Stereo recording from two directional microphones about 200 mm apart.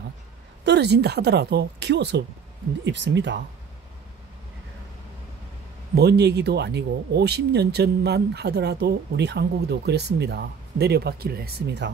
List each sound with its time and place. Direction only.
0.7 s speech: 55° right (ahead or behind)
5.9 s speech: 55° right (ahead or behind)